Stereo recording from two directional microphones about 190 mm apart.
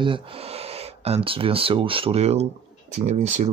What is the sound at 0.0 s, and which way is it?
Speech, 30° right (ahead or behind).